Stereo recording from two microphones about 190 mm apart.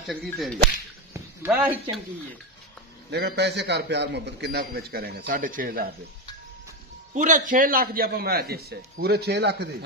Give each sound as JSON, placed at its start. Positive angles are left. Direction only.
{"t": 0.1, "sound": "speech", "side_deg": 0}
{"t": 1.1, "sound": "a sound", "side_deg": -10}
{"t": 3.1, "sound": "a man's voice", "side_deg": -60}
{"t": 7.2, "sound": "a man's voice", "side_deg": -40}